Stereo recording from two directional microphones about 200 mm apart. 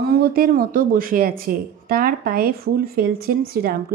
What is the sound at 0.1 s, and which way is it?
Speech, 50° right (ahead or behind).